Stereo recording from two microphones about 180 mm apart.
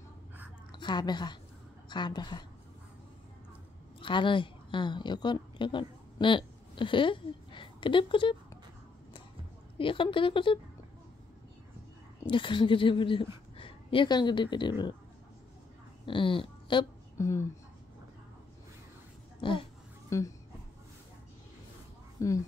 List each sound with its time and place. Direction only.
0.7 s a woman's voice: 25° left (ahead or behind)
4.0 s a woman's voice: 25° left (ahead or behind)
9.8 s speech: 30° left (ahead or behind)
12.3 s a woman's voice: 25° left (ahead or behind)
16.1 s speech: 30° left (ahead or behind)
17.2 s speech: 15° left (ahead or behind)
20.1 s speech: 15° left (ahead or behind)
22.2 s speech: 15° left (ahead or behind)